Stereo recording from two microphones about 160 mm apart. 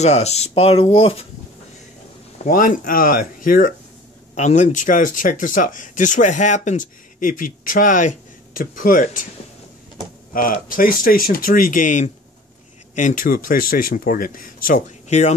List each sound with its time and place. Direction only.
0.0 s speech: 40° left (ahead or behind)
2.3 s speech: 55° left (ahead or behind)
4.4 s speech: 50° left (ahead or behind)
10.3 s speech: 60° left (ahead or behind)